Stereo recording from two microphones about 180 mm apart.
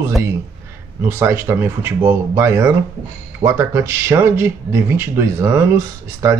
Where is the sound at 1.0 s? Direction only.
15° right (ahead or behind).